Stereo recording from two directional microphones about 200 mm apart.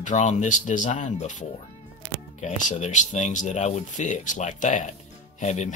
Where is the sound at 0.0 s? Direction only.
35° left (ahead or behind).